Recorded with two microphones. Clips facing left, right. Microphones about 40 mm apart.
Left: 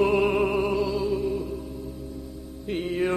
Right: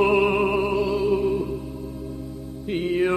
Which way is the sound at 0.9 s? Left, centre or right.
Right.